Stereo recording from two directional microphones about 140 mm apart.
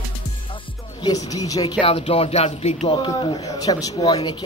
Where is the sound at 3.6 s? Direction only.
30° left (ahead or behind).